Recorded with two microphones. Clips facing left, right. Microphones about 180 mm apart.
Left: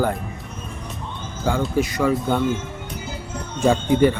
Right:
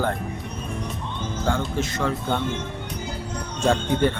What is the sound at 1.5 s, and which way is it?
Speech, 10° left (ahead or behind).